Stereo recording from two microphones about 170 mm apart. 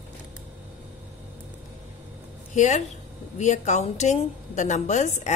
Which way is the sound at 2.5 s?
45° left (ahead or behind).